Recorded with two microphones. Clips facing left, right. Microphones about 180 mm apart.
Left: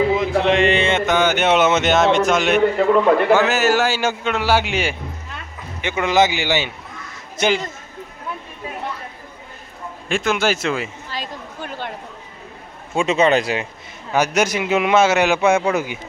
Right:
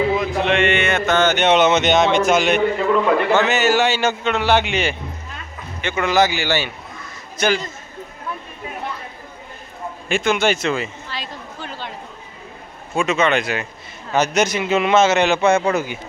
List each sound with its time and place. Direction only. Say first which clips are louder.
0.1 s mantra: left 2 dB; 25° left (ahead or behind)
1.0 s a man's voice: right 1 dB; 15° left (ahead or behind)
10.1 s speech: right 1 dB; centre (ahead or behind)
11.1 s a sound: left 1 dB; 50° left (ahead or behind)
13.0 s speech: left 2 dB; 35° left (ahead or behind)
14.1 s a man's voice: even; 10° left (ahead or behind)